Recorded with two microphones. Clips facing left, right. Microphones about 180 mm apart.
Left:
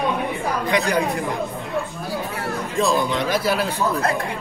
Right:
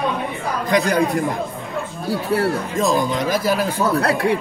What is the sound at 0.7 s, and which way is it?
Speech, 45° right (ahead or behind).